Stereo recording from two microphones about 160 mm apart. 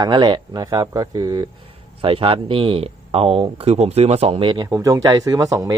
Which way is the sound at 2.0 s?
35° right (ahead or behind).